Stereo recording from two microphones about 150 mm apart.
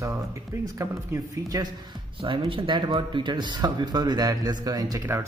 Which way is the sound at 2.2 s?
35° right (ahead or behind).